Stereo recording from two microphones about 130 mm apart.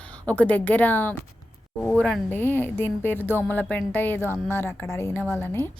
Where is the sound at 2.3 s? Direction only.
15° left (ahead or behind).